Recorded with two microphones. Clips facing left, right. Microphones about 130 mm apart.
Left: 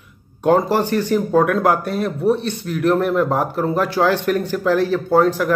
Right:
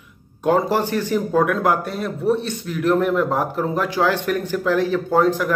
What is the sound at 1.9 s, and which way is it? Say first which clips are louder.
Speech: left 2 dB; 10° left (ahead or behind).